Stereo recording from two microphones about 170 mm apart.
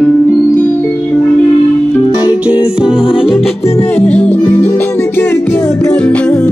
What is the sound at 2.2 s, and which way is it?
Music, 5° right (ahead or behind).